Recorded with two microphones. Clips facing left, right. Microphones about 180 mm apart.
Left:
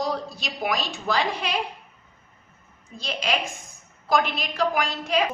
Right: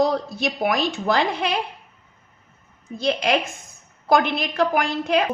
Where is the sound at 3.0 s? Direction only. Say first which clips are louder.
Right 7 dB; 55° right (ahead or behind).